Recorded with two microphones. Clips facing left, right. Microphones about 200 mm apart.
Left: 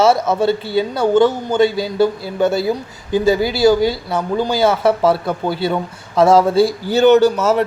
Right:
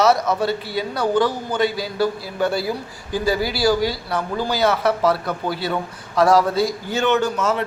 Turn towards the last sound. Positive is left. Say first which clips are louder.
# left 8 dB
turn(degrees=40)  # may be behind; listen again after turning